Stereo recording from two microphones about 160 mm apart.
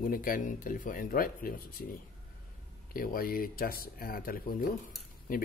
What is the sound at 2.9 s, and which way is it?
Speech, 65° left (ahead or behind).